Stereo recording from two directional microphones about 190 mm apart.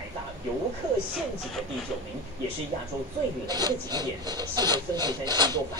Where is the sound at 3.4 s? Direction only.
20° right (ahead or behind).